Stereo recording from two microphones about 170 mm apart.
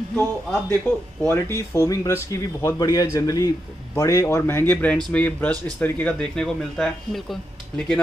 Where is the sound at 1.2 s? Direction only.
15° left (ahead or behind).